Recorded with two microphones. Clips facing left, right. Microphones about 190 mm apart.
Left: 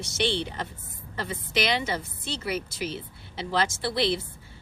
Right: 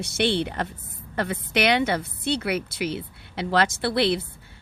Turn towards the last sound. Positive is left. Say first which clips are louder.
# right 4 dB
turn(degrees=-65)  # may be behind; listen again after turning